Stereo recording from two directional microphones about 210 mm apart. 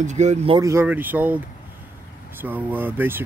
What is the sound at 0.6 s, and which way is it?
Speech, 10° right (ahead or behind).